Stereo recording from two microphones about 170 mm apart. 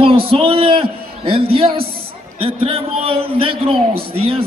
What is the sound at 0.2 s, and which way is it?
A man's voice, 35° right (ahead or behind).